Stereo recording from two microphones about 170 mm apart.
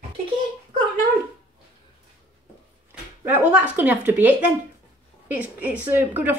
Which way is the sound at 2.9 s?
10° right (ahead or behind).